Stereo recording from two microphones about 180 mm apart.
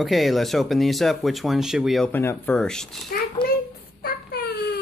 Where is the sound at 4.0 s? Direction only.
55° left (ahead or behind).